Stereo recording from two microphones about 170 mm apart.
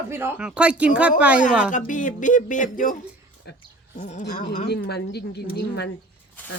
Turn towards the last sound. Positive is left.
turn(degrees=75)  # may be behind; listen again after turning